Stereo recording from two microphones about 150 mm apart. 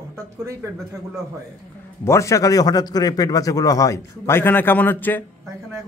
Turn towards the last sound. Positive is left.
turn(degrees=10)  # may be behind; listen again after turning